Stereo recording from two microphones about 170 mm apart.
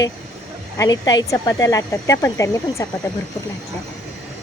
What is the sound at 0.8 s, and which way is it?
Speech, 20° left (ahead or behind).